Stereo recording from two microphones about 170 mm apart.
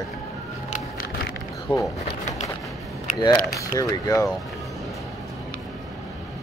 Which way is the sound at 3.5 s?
20° left (ahead or behind).